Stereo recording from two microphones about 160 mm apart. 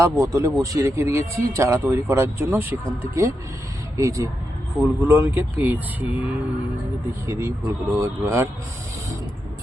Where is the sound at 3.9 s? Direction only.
20° right (ahead or behind).